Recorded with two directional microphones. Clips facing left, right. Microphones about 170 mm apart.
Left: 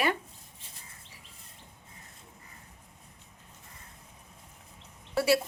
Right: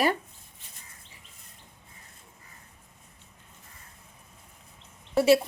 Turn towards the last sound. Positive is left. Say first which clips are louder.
# right 5 dB
turn(degrees=-20)  # may be behind; listen again after turning